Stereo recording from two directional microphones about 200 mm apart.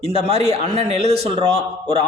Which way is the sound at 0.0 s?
30° right (ahead or behind).